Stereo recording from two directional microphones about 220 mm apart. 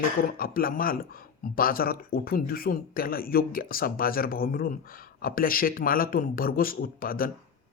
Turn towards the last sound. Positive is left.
turn(degrees=40)  # may be behind; listen again after turning